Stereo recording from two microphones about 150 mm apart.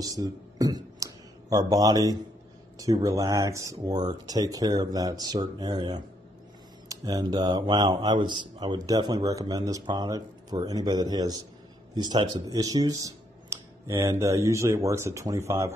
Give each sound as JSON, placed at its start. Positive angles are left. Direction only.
{"t": 0.0, "sound": "speech", "side_deg": -25}